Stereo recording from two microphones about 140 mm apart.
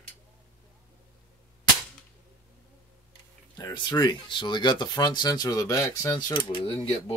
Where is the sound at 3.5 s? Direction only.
30° left (ahead or behind).